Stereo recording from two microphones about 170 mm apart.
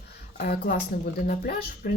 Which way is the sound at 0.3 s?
65° left (ahead or behind).